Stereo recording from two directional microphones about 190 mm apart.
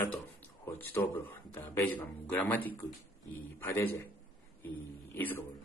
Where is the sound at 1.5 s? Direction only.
10° left (ahead or behind).